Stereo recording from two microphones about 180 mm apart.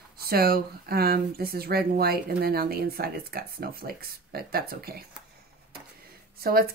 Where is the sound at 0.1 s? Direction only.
55° right (ahead or behind).